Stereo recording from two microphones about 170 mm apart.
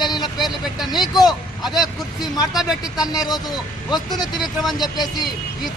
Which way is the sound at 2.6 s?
Centre (ahead or behind).